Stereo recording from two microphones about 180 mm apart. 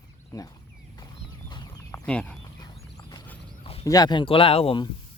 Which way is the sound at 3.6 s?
30° left (ahead or behind).